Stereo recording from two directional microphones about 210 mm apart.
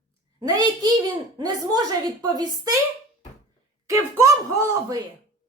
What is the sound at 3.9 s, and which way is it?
Speech, 15° right (ahead or behind).